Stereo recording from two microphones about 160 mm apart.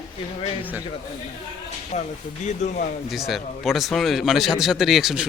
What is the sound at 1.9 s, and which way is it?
Speech, 45° left (ahead or behind).